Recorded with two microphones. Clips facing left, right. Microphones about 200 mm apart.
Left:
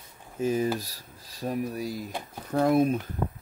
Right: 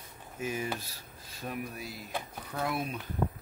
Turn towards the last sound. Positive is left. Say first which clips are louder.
# left 12 dB
turn(degrees=45)  # may be behind; listen again after turning